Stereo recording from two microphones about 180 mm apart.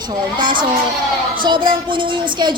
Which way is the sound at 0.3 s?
25° right (ahead or behind).